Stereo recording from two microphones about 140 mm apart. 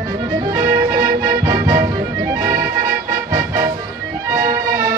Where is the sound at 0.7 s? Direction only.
20° right (ahead or behind).